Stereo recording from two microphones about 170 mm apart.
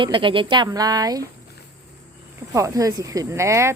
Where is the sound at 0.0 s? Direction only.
30° right (ahead or behind).